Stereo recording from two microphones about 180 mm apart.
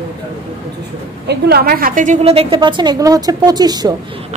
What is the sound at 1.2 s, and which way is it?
A woman's voice, 60° right (ahead or behind).